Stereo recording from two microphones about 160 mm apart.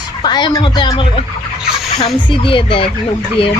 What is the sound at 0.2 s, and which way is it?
Speech, 30° left (ahead or behind).